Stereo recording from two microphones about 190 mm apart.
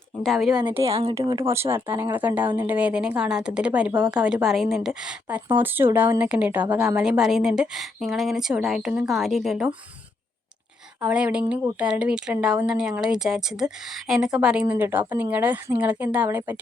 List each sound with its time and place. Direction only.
0.2 s speech: centre (ahead or behind)
0.8 s speech: 30° right (ahead or behind)
1.1 s speech: 20° right (ahead or behind); by 9.7 s centre (ahead or behind)
11.0 s speech: 5° right (ahead or behind)